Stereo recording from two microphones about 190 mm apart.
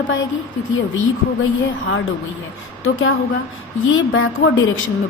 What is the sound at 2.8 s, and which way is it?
A woman's voice, 90° left.